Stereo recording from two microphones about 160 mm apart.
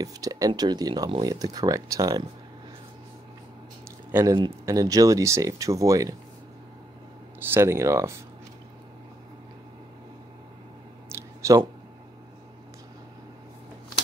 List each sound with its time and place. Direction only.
0.0 s speech: 20° right (ahead or behind)
4.1 s speech: 15° right (ahead or behind)
7.5 s speech: 15° right (ahead or behind)
11.1 s a sound: 20° right (ahead or behind)